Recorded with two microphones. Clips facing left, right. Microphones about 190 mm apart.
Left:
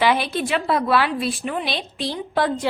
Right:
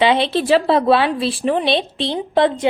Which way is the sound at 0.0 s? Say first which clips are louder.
Right 4 dB; 25° right (ahead or behind).